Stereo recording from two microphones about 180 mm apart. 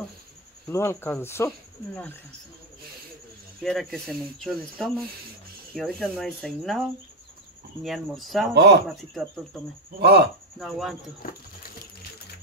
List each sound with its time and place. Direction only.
0.7 s speech: 15° left (ahead or behind)
3.6 s speech: centre (ahead or behind)
7.8 s speech: centre (ahead or behind)
8.5 s speech: 70° right (ahead or behind)
8.8 s speech: centre (ahead or behind)
9.9 s speech: 65° right (ahead or behind)
10.6 s speech: centre (ahead or behind)
11.2 s a sound: 50° left (ahead or behind)